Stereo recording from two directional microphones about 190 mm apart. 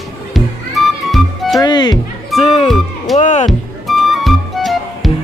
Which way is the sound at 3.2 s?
40° left (ahead or behind).